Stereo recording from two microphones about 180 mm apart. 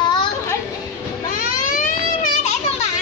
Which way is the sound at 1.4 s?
45° left (ahead or behind).